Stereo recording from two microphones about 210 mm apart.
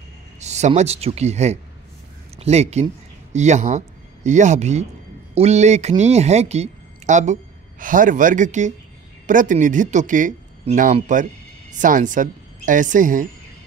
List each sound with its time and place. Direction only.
0.4 s speech: 35° right (ahead or behind)